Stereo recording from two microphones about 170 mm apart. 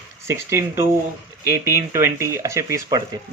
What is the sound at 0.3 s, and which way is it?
Speech, 15° right (ahead or behind).